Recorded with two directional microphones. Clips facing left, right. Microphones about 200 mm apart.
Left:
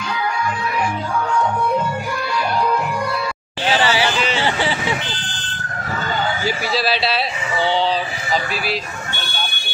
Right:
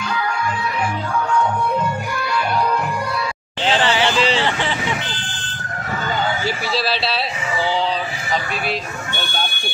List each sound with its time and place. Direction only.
3.6 s a sound: 10° left (ahead or behind)
4.2 s vehicle: 30° right (ahead or behind)
4.5 s vehicle: 10° left (ahead or behind)
6.4 s speech: centre (ahead or behind)